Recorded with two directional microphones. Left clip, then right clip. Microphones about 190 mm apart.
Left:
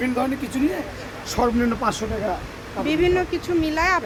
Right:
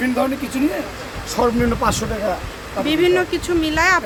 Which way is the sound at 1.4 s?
5° right (ahead or behind).